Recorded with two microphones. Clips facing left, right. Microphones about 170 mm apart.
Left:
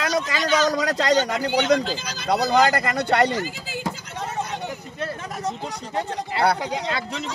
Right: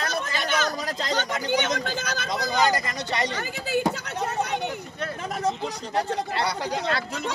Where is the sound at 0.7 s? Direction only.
90° left; by 1.8 s 75° left (ahead or behind).